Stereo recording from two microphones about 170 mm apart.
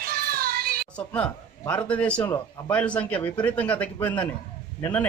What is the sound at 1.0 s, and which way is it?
A man's voice, 5° left (ahead or behind).